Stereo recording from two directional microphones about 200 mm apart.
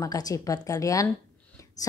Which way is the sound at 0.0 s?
15° left (ahead or behind).